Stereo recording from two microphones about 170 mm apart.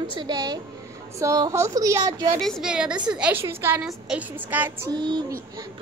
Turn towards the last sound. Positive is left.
turn(degrees=-25)  # may be behind; listen again after turning